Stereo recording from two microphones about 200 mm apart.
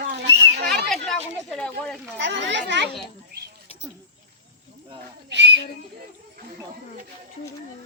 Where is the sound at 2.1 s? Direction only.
60° right (ahead or behind).